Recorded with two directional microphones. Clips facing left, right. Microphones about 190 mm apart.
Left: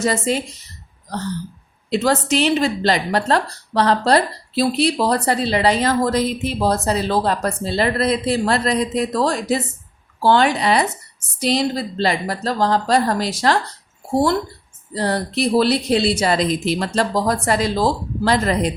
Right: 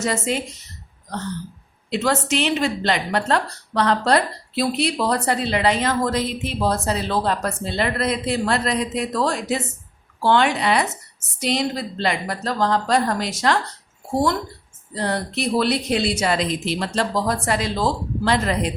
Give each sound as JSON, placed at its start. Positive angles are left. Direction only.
{"t": 0.0, "sound": "a woman's voice", "side_deg": 35}
{"t": 1.9, "sound": "a woman's voice", "side_deg": 35}
{"t": 14.9, "sound": "a woman's voice", "side_deg": 35}